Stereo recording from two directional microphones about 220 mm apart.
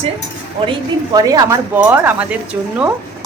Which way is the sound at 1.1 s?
15° right (ahead or behind).